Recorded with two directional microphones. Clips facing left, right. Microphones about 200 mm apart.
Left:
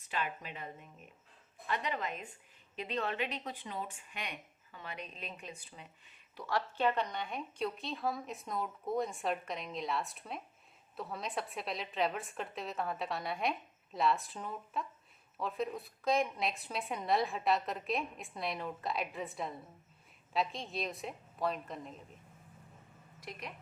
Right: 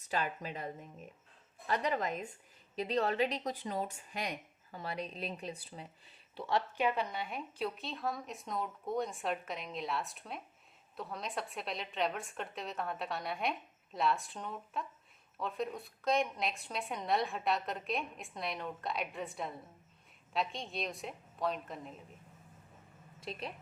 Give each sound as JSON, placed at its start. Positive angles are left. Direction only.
{"t": 0.0, "sound": "speech", "side_deg": -40}
{"t": 6.7, "sound": "a woman's voice", "side_deg": -10}
{"t": 23.2, "sound": "a woman's voice", "side_deg": -25}